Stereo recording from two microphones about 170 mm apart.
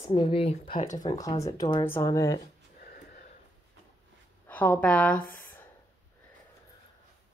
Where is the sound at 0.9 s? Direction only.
20° left (ahead or behind).